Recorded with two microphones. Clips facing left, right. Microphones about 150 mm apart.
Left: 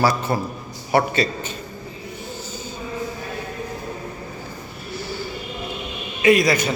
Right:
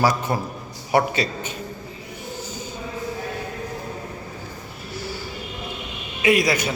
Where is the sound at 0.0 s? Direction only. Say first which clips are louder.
Left 1 dB; 15° right (ahead or behind).